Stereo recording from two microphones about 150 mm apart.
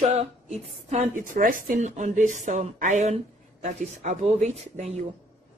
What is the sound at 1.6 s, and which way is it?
A woman's voice, 55° right (ahead or behind).